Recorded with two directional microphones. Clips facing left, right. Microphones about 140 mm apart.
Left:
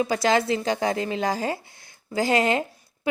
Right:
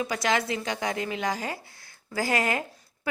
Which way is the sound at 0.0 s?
30° left (ahead or behind).